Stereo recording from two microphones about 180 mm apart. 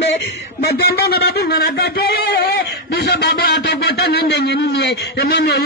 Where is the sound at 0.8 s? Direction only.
60° left (ahead or behind).